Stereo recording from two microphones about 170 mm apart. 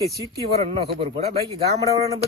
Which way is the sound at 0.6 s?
35° right (ahead or behind).